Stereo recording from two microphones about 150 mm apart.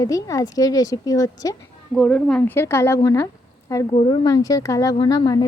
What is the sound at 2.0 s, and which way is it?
A woman's voice, 10° left (ahead or behind).